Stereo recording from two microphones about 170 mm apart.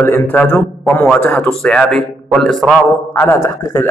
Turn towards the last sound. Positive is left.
turn(degrees=15)  # may be behind; listen again after turning